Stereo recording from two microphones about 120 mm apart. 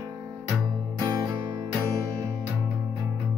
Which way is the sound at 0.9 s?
35° right (ahead or behind).